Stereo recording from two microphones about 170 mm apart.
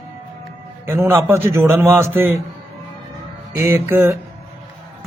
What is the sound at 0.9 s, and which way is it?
A man's voice, 15° right (ahead or behind).